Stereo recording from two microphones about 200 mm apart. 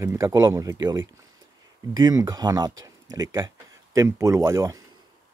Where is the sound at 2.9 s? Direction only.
20° right (ahead or behind).